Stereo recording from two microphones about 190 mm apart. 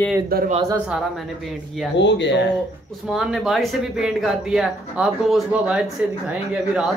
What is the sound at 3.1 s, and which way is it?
Speech, centre (ahead or behind).